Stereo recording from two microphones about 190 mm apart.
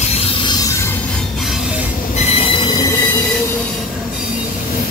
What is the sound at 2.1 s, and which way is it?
Train wheels squealing, 35° left (ahead or behind).